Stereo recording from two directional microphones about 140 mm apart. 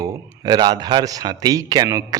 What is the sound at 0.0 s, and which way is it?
Speech, 30° right (ahead or behind).